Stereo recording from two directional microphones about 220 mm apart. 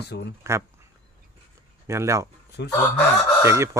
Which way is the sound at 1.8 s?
15° right (ahead or behind).